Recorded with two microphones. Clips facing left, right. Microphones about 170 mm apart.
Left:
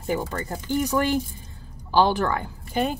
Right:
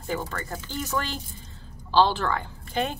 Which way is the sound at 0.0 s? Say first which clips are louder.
Left 4 dB; 20° left (ahead or behind).